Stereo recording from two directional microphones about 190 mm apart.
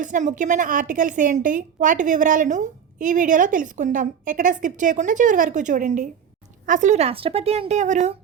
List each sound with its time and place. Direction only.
0.0 s a woman's voice: 40° right (ahead or behind)